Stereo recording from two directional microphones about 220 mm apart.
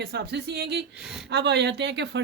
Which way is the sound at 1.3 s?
50° right (ahead or behind).